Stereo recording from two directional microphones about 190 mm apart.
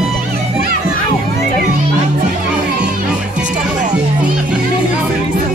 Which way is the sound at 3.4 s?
5° right (ahead or behind).